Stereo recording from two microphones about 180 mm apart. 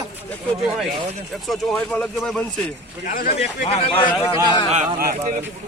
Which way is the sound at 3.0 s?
50° left (ahead or behind).